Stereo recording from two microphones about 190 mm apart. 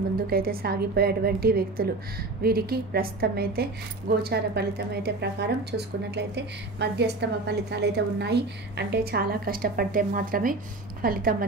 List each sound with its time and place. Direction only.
0.3 s a woman's voice: 50° right (ahead or behind)